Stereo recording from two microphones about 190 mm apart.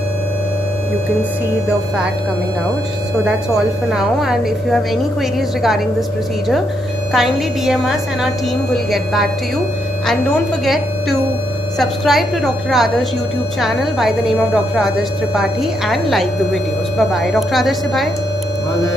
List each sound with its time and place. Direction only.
3.3 s a woman's voice: 5° right (ahead or behind)
7.1 s a woman's voice: centre (ahead or behind)
10.6 s a woman's voice: centre (ahead or behind)